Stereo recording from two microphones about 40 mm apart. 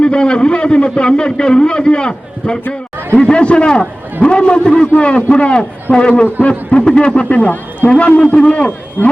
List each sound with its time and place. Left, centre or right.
0.0 s a man's voice: left